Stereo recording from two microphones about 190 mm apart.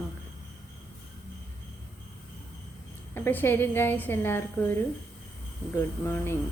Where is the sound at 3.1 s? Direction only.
10° left (ahead or behind).